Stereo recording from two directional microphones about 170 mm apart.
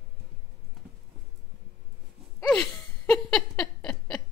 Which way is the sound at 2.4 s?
5° left (ahead or behind).